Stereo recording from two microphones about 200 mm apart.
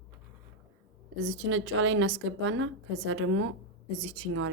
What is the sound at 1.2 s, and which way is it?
A woman's voice, 70° right (ahead or behind).